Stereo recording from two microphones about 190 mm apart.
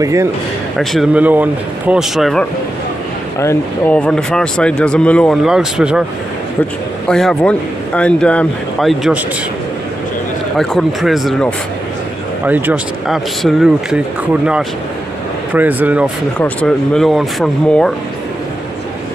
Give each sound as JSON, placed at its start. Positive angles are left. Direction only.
{"t": 0.0, "sound": "speech", "side_deg": -15}
{"t": 0.7, "sound": "speech", "side_deg": -5}
{"t": 3.3, "sound": "speech", "side_deg": 10}
{"t": 7.1, "sound": "speech", "side_deg": 5}
{"t": 10.6, "sound": "speech", "side_deg": 0}
{"t": 12.4, "sound": "speech", "side_deg": -10}
{"t": 16.3, "sound": "speech", "side_deg": 5}